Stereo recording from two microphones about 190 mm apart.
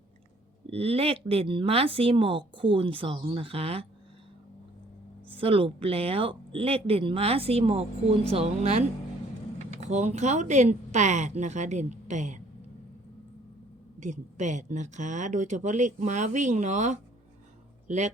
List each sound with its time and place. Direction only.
0.7 s speech: 30° right (ahead or behind)
5.3 s speech: 30° right (ahead or behind)
14.0 s speech: 40° right (ahead or behind)